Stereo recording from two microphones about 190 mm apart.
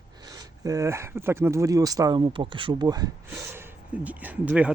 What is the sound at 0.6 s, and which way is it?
Speech, 15° right (ahead or behind).